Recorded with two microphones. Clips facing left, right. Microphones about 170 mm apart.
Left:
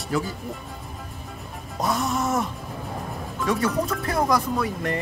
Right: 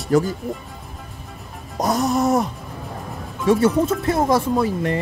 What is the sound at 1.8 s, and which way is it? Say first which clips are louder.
Music: right 6 dB; 40° right (ahead or behind).